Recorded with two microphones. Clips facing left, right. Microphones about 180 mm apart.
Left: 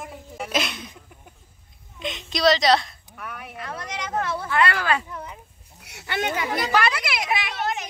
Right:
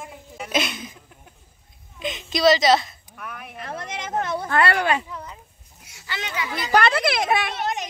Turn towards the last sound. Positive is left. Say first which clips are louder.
# right 1 dB
turn(degrees=-20)  # may be behind; listen again after turning